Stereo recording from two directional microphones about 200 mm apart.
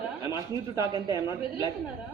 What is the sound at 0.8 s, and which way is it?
Speech, 20° right (ahead or behind).